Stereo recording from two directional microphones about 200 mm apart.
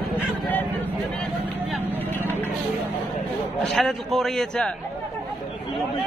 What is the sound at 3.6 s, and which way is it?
A man's voice, centre (ahead or behind).